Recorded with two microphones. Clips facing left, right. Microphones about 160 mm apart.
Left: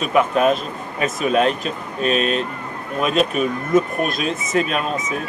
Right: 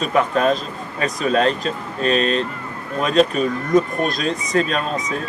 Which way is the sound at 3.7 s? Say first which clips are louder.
Right 1 dB; 35° right (ahead or behind).